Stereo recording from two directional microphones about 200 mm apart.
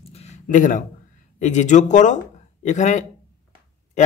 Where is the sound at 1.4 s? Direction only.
35° left (ahead or behind).